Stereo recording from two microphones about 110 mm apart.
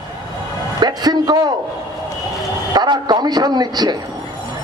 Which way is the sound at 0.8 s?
40° right (ahead or behind).